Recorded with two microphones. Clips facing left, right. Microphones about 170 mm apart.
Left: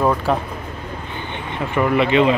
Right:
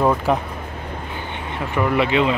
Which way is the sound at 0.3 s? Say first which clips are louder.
Even; 15° right (ahead or behind).